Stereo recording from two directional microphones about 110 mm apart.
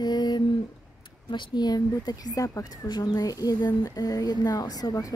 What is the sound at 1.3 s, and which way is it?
Speech, 40° left (ahead or behind).